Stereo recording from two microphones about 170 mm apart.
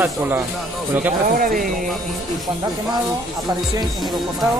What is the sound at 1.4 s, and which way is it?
Speech, 55° right (ahead or behind).